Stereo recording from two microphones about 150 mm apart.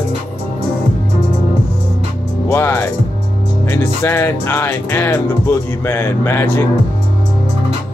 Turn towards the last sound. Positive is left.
turn(degrees=15)  # may be behind; listen again after turning